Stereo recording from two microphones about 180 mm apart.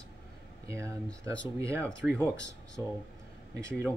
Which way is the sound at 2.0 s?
5° right (ahead or behind).